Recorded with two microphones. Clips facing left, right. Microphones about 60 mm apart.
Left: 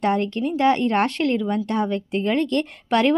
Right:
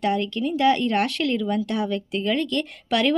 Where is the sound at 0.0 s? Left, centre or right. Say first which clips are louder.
Left 2 dB; left.